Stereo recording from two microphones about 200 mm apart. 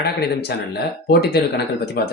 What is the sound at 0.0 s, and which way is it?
Speech, 55° left (ahead or behind).